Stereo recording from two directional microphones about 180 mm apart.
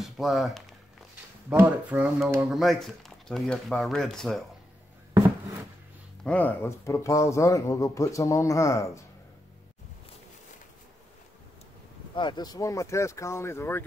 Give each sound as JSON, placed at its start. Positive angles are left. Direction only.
{"t": 0.0, "sound": "speech", "side_deg": 0}
{"t": 6.2, "sound": "speech", "side_deg": 10}
{"t": 12.2, "sound": "speech", "side_deg": 25}